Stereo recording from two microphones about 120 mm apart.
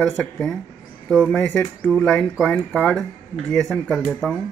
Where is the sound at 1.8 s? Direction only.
5° left (ahead or behind).